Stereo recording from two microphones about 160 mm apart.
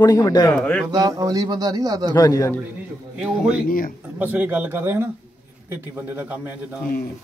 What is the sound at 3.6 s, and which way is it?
Speech, 60° left (ahead or behind).